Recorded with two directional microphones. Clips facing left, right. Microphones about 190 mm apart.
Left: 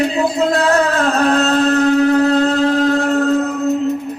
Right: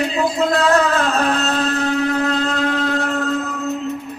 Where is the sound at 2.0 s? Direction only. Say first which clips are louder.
Left 7 dB; 35° left (ahead or behind).